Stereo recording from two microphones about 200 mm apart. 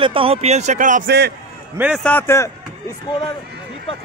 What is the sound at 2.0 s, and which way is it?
Speech, 10° left (ahead or behind).